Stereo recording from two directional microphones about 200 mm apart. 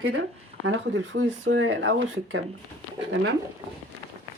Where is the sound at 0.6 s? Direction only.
65° right (ahead or behind).